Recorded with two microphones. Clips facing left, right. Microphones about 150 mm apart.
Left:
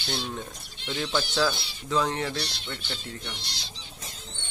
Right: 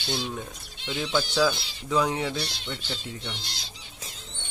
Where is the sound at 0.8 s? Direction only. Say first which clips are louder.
Right 1 dB; 15° right (ahead or behind).